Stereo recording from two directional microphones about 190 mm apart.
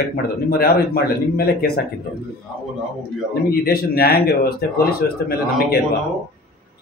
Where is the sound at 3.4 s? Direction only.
55° left (ahead or behind).